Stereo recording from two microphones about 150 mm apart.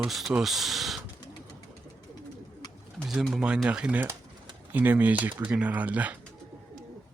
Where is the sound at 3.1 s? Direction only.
Centre (ahead or behind).